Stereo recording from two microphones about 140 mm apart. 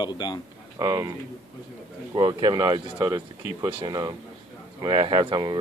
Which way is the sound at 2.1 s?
35° right (ahead or behind).